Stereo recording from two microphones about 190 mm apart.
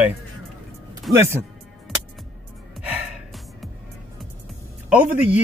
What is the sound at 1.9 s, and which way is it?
Music, centre (ahead or behind).